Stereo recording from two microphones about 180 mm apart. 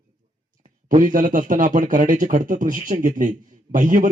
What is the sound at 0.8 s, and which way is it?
Speech, 45° right (ahead or behind).